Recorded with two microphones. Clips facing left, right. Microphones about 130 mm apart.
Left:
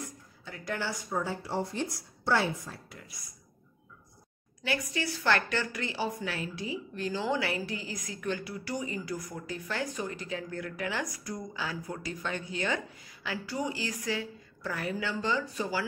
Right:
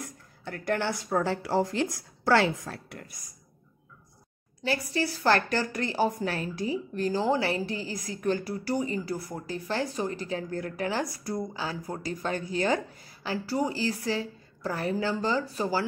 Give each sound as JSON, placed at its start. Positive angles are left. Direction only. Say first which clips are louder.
{"t": 0.0, "sound": "a woman's voice", "louder": "right 3 dB", "side_deg": -60}
{"t": 3.0, "sound": "speech", "louder": "right 4 dB", "side_deg": -50}
{"t": 4.6, "sound": "a woman's voice", "louder": "right 4 dB", "side_deg": -35}